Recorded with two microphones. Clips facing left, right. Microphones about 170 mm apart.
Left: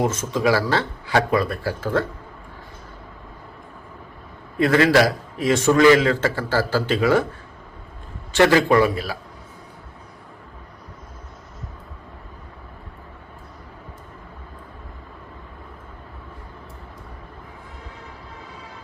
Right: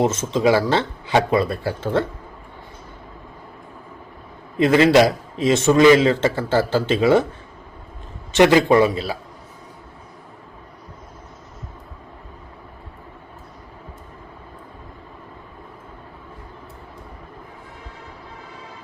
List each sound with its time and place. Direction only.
0.0 s a man's voice: 25° right (ahead or behind)
4.5 s a man's voice: 20° right (ahead or behind)
8.3 s a man's voice: 20° right (ahead or behind)